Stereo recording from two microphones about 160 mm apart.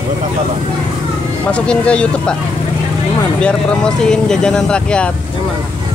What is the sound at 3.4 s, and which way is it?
Speech, 5° left (ahead or behind).